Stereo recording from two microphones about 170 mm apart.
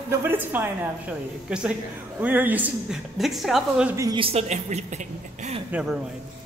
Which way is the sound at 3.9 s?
20° right (ahead or behind).